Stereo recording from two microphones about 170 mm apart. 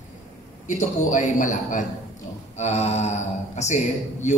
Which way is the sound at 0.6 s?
45° left (ahead or behind).